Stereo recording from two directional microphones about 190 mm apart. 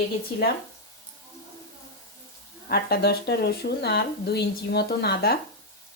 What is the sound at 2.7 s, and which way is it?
Speech, 55° left (ahead or behind).